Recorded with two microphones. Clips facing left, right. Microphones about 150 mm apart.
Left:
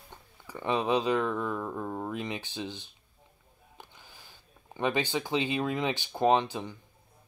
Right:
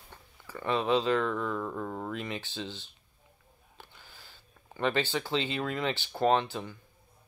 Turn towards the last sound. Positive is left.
turn(degrees=15)  # may be behind; listen again after turning